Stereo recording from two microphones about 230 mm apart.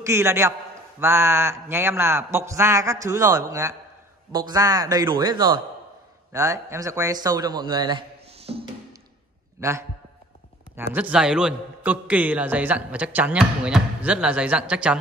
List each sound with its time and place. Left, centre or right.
0.0 s a man's voice: centre
9.6 s a man's voice: centre